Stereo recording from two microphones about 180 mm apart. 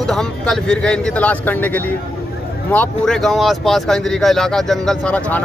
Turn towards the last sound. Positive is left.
turn(degrees=5)  # may be behind; listen again after turning